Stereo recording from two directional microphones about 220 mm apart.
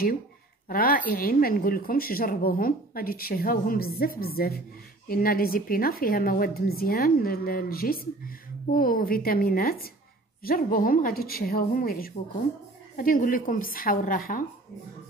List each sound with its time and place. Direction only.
0.7 s speech: 40° left (ahead or behind)